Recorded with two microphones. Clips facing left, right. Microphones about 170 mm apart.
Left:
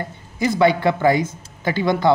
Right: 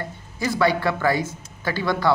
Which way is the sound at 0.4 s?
20° left (ahead or behind).